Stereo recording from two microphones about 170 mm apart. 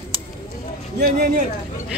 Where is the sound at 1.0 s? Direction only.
65° right (ahead or behind).